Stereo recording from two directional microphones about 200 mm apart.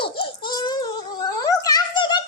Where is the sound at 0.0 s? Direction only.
25° left (ahead or behind).